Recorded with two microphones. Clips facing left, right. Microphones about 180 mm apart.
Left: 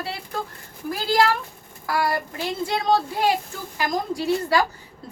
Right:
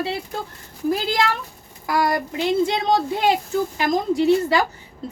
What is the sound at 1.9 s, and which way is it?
Speech, 20° right (ahead or behind).